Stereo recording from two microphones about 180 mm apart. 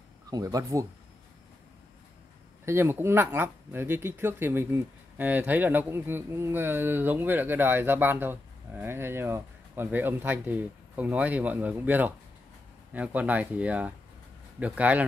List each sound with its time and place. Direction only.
0.3 s speech: 20° right (ahead or behind)
2.6 s speech: 15° right (ahead or behind)